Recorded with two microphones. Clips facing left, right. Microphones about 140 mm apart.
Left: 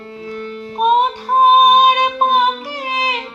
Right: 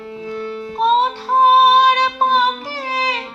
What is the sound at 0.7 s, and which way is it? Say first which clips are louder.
Music: left 2 dB; 15° left (ahead or behind).